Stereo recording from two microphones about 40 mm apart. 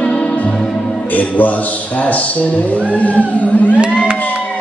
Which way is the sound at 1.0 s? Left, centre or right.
Left.